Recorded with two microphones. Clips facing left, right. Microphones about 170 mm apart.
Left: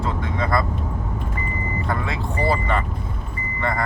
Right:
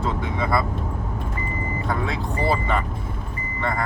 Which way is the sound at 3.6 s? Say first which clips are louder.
Left 1 dB; centre (ahead or behind).